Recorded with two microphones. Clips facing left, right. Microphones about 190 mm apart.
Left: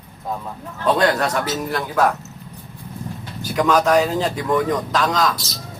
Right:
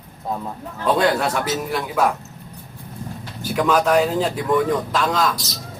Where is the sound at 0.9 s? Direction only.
5° right (ahead or behind).